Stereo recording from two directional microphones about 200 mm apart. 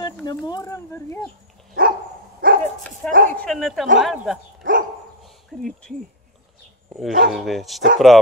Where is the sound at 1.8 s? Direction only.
45° right (ahead or behind).